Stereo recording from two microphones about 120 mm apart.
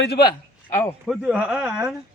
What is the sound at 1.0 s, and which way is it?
Speech, centre (ahead or behind).